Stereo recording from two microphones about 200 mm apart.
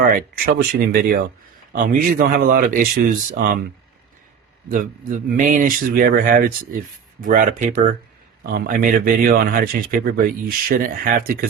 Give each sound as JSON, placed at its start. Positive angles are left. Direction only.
{"t": 0.0, "sound": "speech", "side_deg": -45}
{"t": 4.7, "sound": "speech", "side_deg": -40}